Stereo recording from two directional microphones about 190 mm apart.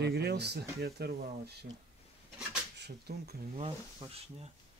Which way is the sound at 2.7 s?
60° right (ahead or behind).